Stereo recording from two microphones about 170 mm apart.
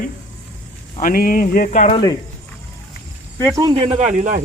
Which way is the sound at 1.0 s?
60° left (ahead or behind).